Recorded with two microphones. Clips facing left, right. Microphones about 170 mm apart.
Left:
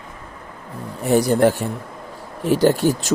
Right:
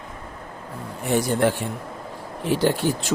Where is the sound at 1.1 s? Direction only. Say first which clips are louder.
Left 5 dB; 40° left (ahead or behind).